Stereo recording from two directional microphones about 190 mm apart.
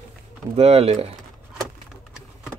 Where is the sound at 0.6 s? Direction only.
30° right (ahead or behind).